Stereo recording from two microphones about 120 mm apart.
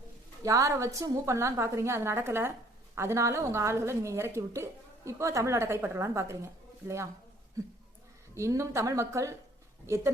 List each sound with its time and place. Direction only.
0.4 s speech: 25° right (ahead or behind)
8.4 s speech: 25° right (ahead or behind)